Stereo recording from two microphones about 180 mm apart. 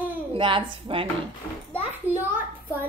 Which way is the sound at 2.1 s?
10° right (ahead or behind).